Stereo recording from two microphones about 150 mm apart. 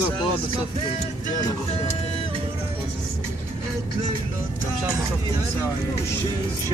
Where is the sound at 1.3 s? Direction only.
55° left (ahead or behind).